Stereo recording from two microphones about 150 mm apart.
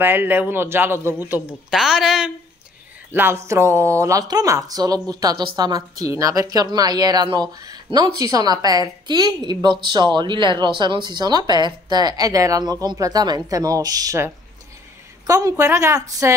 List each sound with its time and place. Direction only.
0.0 s a man's voice: 15° right (ahead or behind)
1.7 s a woman's voice: centre (ahead or behind)
3.1 s speech: 15° right (ahead or behind)